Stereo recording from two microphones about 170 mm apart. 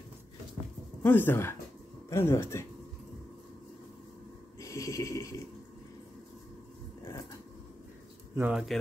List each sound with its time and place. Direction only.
1.0 s speech: 10° left (ahead or behind)
4.6 s a sound: 20° left (ahead or behind)
7.0 s vehicle: 15° left (ahead or behind)
8.4 s speech: 5° right (ahead or behind)